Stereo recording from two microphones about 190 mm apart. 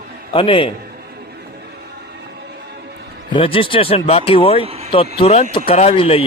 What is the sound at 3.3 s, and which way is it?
A man's voice, 30° left (ahead or behind).